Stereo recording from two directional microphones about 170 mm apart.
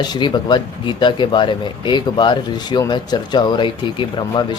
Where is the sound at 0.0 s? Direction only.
25° left (ahead or behind).